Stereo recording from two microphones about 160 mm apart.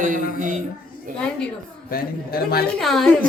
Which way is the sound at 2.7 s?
Centre (ahead or behind).